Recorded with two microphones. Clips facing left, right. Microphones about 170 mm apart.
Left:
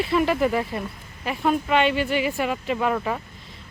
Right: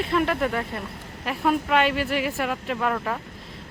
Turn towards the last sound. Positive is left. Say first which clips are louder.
# left 2 dB
turn(degrees=0)  # may be behind; listen again after turning